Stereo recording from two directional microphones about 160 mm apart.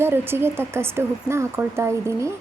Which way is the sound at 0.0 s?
15° right (ahead or behind).